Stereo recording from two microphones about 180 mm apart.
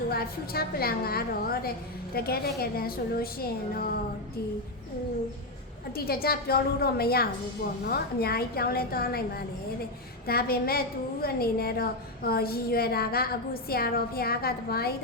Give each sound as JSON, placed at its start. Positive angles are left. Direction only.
{"t": 0.1, "sound": "a woman's voice", "side_deg": 60}
{"t": 5.9, "sound": "a woman's voice", "side_deg": 55}